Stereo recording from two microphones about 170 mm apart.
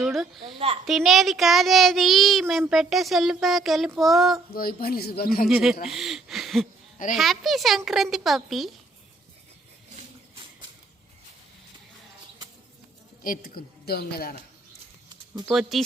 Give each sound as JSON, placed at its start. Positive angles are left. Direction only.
{"t": 0.0, "sound": "a sound", "side_deg": 0}
{"t": 0.9, "sound": "speech", "side_deg": 0}
{"t": 4.5, "sound": "a woman's voice", "side_deg": 60}
{"t": 5.5, "sound": "speech", "side_deg": 0}
{"t": 13.2, "sound": "a woman's voice", "side_deg": 55}
{"t": 15.4, "sound": "speech", "side_deg": 0}